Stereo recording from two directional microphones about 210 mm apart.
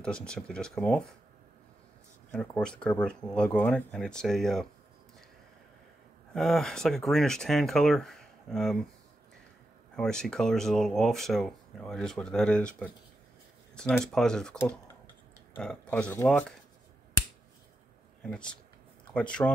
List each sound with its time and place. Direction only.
0.0 s speech: 5° left (ahead or behind)
2.3 s speech: 5° left (ahead or behind)
6.3 s speech: centre (ahead or behind)
9.9 s speech: 5° left (ahead or behind)
18.2 s speech: 5° left (ahead or behind)